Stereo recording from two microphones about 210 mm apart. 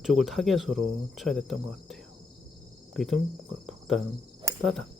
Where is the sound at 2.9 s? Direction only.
Centre (ahead or behind).